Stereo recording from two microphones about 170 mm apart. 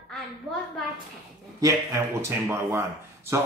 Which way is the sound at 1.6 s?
20° right (ahead or behind).